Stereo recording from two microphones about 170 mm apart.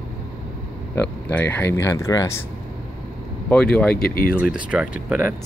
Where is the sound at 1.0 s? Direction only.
10° left (ahead or behind).